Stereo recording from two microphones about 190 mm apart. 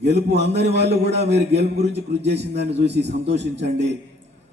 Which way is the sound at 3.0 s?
35° right (ahead or behind).